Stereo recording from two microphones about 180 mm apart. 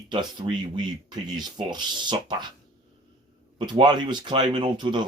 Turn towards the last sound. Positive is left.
turn(degrees=-25)  # may be behind; listen again after turning